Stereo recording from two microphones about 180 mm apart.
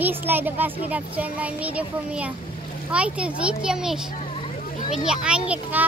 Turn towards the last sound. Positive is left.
turn(degrees=-10)  # may be behind; listen again after turning